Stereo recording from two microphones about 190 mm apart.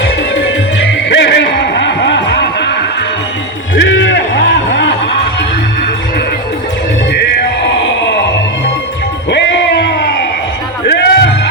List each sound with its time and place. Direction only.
1.1 s music: 70° left (ahead or behind)
3.8 s a sound: 70° left (ahead or behind)
7.1 s music: 60° left (ahead or behind)
7.9 s music: 70° left (ahead or behind)
9.3 s a sound: 65° left (ahead or behind)
10.8 s music: 60° left (ahead or behind)